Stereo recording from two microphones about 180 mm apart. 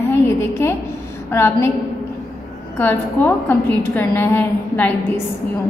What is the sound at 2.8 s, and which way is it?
A woman's voice, 10° left (ahead or behind).